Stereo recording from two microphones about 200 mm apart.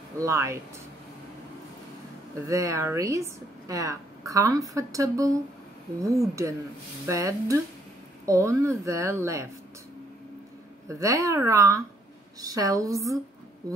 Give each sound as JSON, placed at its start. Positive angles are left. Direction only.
{"t": 0.2, "sound": "a woman's voice", "side_deg": -15}
{"t": 2.4, "sound": "a woman's voice", "side_deg": -15}
{"t": 10.9, "sound": "a woman's voice", "side_deg": -15}